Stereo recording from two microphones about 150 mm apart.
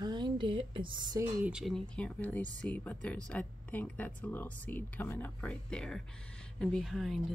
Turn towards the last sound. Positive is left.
turn(degrees=0)  # may be behind; listen again after turning